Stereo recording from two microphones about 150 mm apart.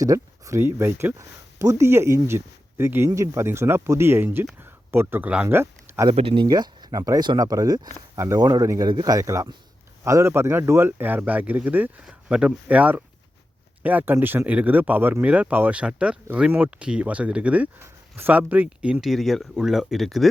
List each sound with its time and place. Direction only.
0.0 s speech: 20° right (ahead or behind)
6.1 s speech: 35° right (ahead or behind); by 20.2 s centre (ahead or behind)